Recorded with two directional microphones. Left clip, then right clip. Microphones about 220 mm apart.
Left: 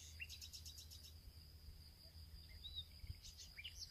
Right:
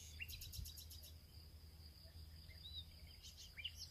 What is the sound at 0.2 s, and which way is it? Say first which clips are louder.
Bird: right 1 dB; 50° right (ahead or behind).